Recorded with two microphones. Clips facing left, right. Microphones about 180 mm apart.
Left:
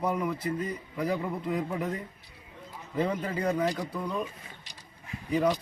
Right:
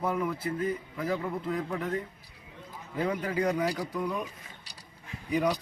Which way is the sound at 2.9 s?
10° right (ahead or behind).